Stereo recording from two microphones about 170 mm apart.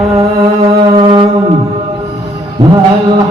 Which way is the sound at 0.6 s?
30° right (ahead or behind).